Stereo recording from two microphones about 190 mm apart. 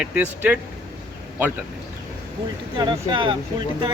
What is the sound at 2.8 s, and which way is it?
Speech, 25° right (ahead or behind).